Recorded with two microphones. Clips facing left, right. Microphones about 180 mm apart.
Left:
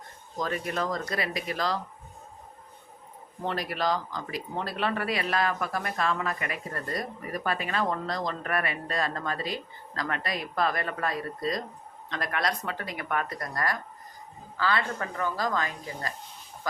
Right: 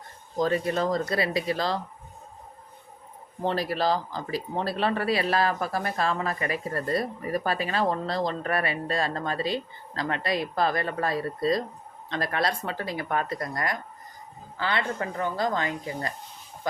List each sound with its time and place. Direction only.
0.3 s speech: 30° right (ahead or behind)
3.4 s speech: 30° right (ahead or behind)